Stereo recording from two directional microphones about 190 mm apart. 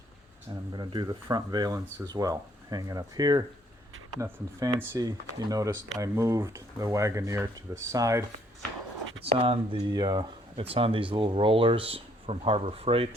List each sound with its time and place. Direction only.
0.7 s speech: 25° right (ahead or behind)
9.2 s speech: 30° right (ahead or behind)